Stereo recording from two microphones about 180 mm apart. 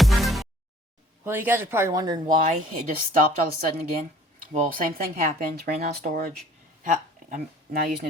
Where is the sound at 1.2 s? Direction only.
10° right (ahead or behind).